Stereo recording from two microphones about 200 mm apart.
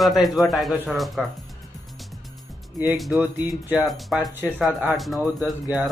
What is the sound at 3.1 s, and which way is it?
Speech, 20° left (ahead or behind).